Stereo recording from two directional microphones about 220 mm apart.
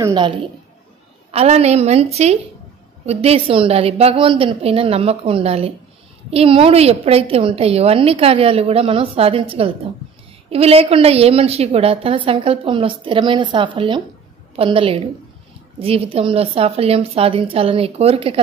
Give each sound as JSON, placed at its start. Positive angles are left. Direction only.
{"t": 0.0, "sound": "a woman's voice", "side_deg": -20}